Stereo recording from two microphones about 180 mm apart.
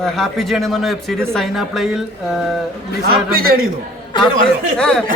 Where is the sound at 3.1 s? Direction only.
55° right (ahead or behind).